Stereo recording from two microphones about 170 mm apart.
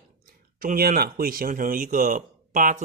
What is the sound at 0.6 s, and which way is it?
Speech, 60° right (ahead or behind).